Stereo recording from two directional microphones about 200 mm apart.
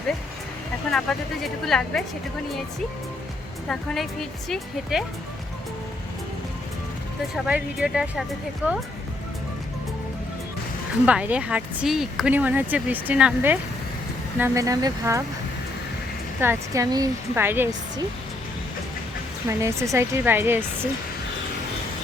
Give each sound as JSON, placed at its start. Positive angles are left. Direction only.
{"t": 0.9, "sound": "speech", "side_deg": 0}
{"t": 3.7, "sound": "speech", "side_deg": 0}
{"t": 7.4, "sound": "speech", "side_deg": -5}
{"t": 11.0, "sound": "speech", "side_deg": -5}
{"t": 16.4, "sound": "speech", "side_deg": -15}
{"t": 19.5, "sound": "speech", "side_deg": -15}